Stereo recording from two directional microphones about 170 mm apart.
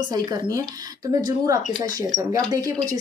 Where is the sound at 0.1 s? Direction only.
25° right (ahead or behind).